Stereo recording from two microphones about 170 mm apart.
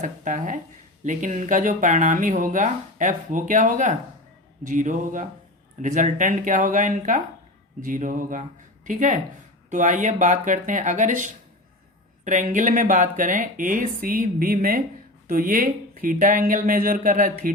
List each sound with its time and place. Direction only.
0.0 s speech: 50° right (ahead or behind)